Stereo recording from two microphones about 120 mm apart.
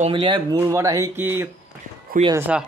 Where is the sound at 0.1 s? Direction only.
40° right (ahead or behind).